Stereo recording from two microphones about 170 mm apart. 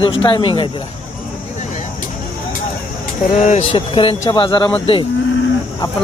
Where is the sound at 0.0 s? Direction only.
30° left (ahead or behind).